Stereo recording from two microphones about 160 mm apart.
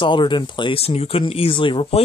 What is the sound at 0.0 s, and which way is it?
Speech, 30° left (ahead or behind).